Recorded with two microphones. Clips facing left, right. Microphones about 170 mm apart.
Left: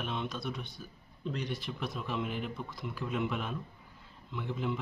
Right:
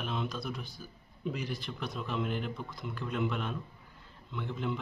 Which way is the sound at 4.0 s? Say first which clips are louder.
Right 1 dB; centre (ahead or behind).